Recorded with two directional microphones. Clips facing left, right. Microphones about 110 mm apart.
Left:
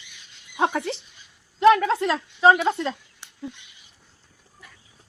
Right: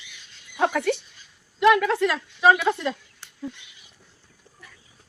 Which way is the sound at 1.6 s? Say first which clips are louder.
Left 2 dB; 30° left (ahead or behind).